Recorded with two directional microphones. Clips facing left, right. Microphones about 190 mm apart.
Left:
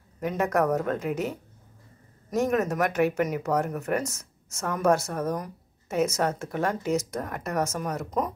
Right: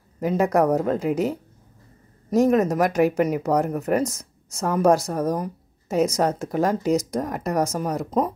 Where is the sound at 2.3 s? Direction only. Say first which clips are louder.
Right 6 dB; 35° right (ahead or behind).